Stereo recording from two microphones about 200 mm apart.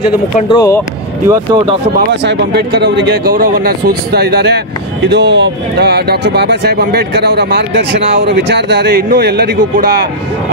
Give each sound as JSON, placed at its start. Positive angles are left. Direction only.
{"t": 0.5, "sound": "speech", "side_deg": 15}
{"t": 1.2, "sound": "speech", "side_deg": -15}
{"t": 2.0, "sound": "speech", "side_deg": -55}